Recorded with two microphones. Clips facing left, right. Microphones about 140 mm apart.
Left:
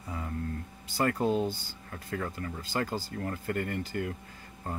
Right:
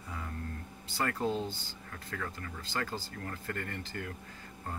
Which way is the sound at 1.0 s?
15° left (ahead or behind).